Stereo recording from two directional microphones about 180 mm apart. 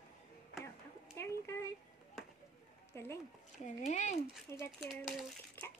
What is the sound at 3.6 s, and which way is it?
Speech, 40° left (ahead or behind).